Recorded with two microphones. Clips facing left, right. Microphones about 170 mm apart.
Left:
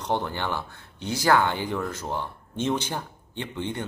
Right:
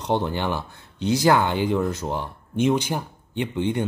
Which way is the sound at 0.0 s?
20° right (ahead or behind).